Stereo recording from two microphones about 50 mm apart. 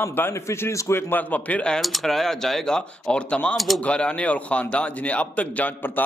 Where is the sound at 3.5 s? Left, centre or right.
Centre.